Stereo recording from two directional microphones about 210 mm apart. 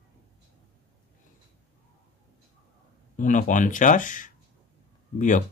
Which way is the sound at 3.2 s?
40° left (ahead or behind).